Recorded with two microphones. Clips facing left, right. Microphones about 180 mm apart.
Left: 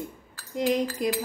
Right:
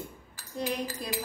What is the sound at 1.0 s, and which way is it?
Speech, 20° left (ahead or behind).